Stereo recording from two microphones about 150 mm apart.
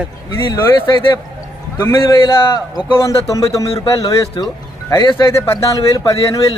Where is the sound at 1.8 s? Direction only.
20° left (ahead or behind).